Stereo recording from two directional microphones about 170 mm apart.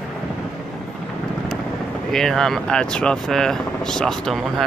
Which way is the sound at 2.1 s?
5° left (ahead or behind).